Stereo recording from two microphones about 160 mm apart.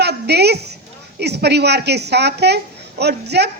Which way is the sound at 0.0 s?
90° right.